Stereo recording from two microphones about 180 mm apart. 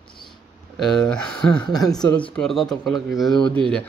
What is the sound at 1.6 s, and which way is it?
Speech, 20° left (ahead or behind).